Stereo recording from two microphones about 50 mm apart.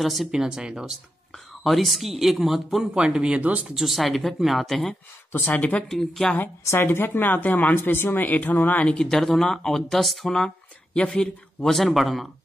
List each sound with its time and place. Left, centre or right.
0.0 s speech: centre
0.3 s speech: centre
1.6 s speech: centre
3.3 s speech: right
3.7 s speech: centre
5.3 s speech: left
5.9 s speech: centre
6.6 s a woman's voice: left
7.7 s a woman's voice: left
8.8 s speech: centre
11.6 s speech: centre